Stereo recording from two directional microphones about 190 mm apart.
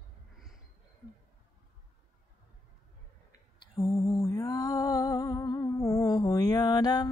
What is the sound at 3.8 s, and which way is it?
Music, 15° left (ahead or behind).